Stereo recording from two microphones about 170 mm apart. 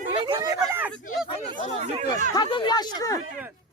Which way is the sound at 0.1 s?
25° right (ahead or behind).